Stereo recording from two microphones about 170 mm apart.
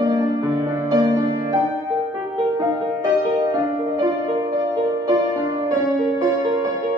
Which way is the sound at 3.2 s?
20° right (ahead or behind).